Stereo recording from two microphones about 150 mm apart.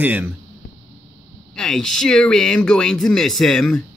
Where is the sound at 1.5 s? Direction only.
5° left (ahead or behind).